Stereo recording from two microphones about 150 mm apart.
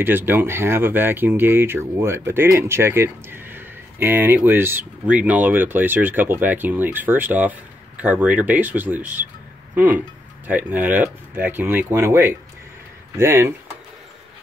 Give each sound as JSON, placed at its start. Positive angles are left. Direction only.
{"t": 0.0, "sound": "speech", "side_deg": -15}